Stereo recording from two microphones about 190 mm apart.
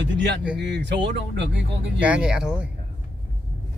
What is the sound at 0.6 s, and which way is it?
Speech, 65° right (ahead or behind).